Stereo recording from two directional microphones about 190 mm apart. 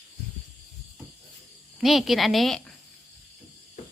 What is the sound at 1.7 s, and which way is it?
Speech, centre (ahead or behind).